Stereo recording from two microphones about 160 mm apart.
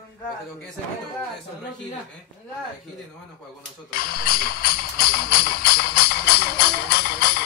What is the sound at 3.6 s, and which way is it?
Speech, 65° left (ahead or behind).